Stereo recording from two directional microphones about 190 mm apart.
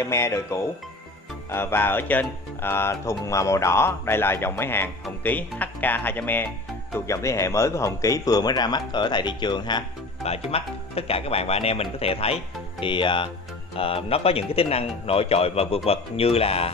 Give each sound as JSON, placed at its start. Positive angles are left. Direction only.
{"t": 0.0, "sound": "a man's voice", "side_deg": 15}